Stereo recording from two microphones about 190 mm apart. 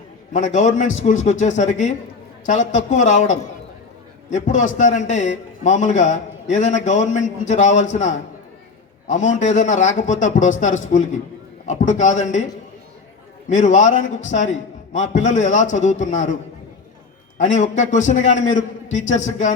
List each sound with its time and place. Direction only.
0.3 s a man's voice: 40° left (ahead or behind)
13.5 s a man's voice: 40° left (ahead or behind)
17.3 s a man's voice: 40° left (ahead or behind)